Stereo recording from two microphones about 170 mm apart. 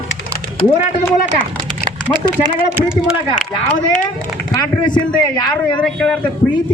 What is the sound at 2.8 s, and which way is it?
Speech, 5° right (ahead or behind).